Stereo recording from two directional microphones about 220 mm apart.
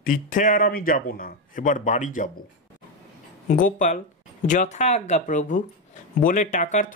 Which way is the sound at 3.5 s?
35° left (ahead or behind).